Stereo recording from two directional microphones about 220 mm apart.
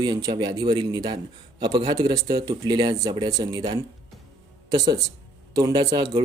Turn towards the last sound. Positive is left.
turn(degrees=-20)  # may be behind; listen again after turning